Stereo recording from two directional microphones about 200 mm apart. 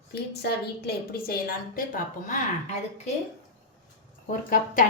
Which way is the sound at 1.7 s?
40° left (ahead or behind).